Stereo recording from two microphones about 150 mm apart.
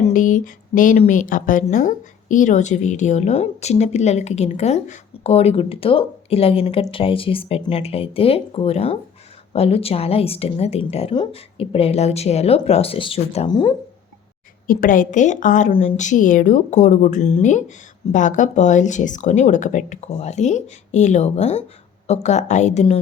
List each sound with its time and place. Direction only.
0.0 s a sound: 60° left (ahead or behind)
0.9 s a woman's voice: 55° left (ahead or behind); by 13.5 s 40° left (ahead or behind)
13.5 s speech: 30° left (ahead or behind)
14.7 s a woman's voice: 65° left (ahead or behind); by 23.0 s 45° left (ahead or behind)